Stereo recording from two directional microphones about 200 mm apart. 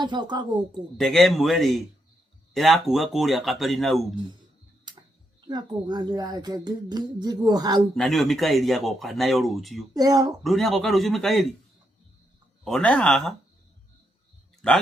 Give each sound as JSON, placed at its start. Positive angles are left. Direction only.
{"t": 0.0, "sound": "speech", "side_deg": -20}
{"t": 0.9, "sound": "speech", "side_deg": 0}
{"t": 4.9, "sound": "tick-tock", "side_deg": -20}
{"t": 5.5, "sound": "speech", "side_deg": -20}
{"t": 7.9, "sound": "speech", "side_deg": 0}
{"t": 9.9, "sound": "speech", "side_deg": -20}
{"t": 10.4, "sound": "speech", "side_deg": 0}
{"t": 12.6, "sound": "speech", "side_deg": 5}